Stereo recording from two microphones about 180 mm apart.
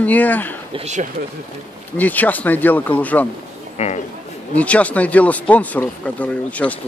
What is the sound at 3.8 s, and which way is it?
Speech, 35° left (ahead or behind).